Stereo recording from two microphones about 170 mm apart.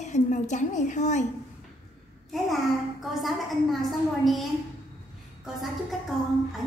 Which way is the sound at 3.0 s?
Centre (ahead or behind).